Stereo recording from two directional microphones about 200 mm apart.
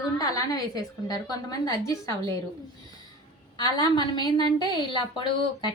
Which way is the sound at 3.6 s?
20° left (ahead or behind).